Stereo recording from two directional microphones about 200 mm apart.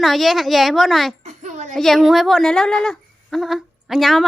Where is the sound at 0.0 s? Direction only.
Centre (ahead or behind).